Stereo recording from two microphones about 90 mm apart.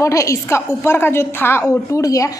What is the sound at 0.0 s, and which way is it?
A woman's voice, 35° left (ahead or behind).